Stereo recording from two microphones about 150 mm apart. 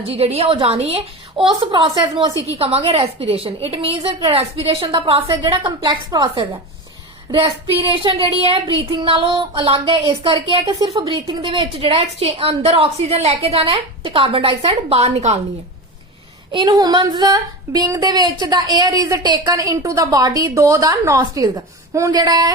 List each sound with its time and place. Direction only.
0.0 s a woman's voice: 40° right (ahead or behind)
16.5 s speech: 30° right (ahead or behind)